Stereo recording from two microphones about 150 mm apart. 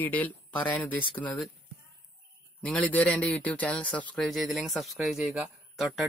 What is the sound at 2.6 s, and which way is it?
Speech, 10° left (ahead or behind).